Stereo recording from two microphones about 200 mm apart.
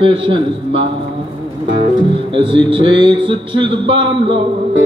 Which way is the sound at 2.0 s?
25° right (ahead or behind).